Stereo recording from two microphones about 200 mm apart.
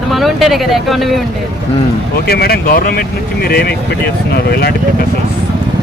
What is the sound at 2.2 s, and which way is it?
Speech, 50° left (ahead or behind).